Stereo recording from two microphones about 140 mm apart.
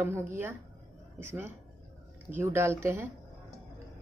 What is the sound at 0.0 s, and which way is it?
Speech, 15° right (ahead or behind).